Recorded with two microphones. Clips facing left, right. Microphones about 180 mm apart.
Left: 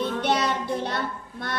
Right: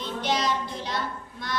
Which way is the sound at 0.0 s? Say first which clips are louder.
Left 3 dB; 60° left (ahead or behind).